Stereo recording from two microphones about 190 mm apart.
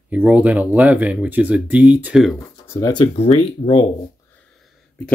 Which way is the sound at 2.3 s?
15° left (ahead or behind).